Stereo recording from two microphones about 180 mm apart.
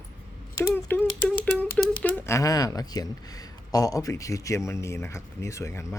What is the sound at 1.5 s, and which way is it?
Speech, 5° left (ahead or behind).